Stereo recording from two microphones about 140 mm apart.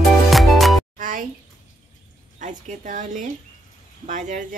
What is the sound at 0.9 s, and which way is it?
Music, 65° right (ahead or behind).